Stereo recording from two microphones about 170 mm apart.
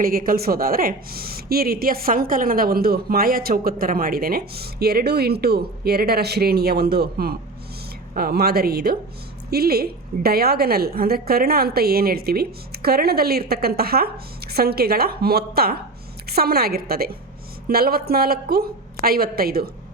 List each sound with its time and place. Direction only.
0.0 s speech: 60° right (ahead or behind)